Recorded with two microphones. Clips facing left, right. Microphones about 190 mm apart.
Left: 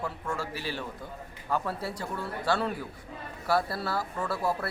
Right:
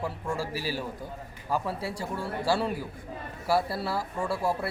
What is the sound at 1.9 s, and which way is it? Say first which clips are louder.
Speech: right 2 dB; 30° right (ahead or behind).